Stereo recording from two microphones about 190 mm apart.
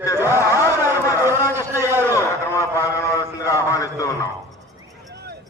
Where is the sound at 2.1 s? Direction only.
15° left (ahead or behind).